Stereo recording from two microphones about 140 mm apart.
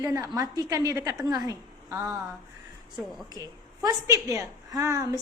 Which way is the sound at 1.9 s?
20° right (ahead or behind).